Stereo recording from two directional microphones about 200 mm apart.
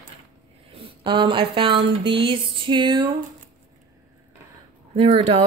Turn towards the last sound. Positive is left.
turn(degrees=-30)  # may be behind; listen again after turning